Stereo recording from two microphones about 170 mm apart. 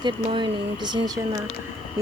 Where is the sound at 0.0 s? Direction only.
25° right (ahead or behind).